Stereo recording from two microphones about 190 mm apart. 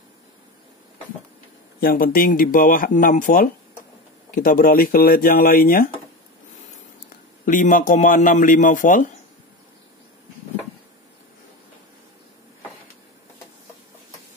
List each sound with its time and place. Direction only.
1.8 s speech: 50° left (ahead or behind)
7.4 s speech: 45° left (ahead or behind)